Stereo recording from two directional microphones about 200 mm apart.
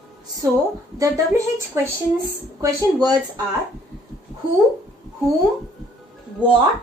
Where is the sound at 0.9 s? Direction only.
15° right (ahead or behind).